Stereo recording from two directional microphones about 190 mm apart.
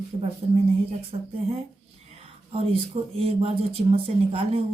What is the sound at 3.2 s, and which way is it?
Speech, 30° right (ahead or behind).